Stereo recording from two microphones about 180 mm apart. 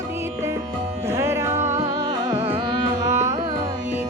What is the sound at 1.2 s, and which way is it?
Music, 15° right (ahead or behind).